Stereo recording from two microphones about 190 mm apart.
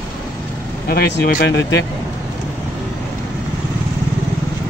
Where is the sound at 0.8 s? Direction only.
55° left (ahead or behind).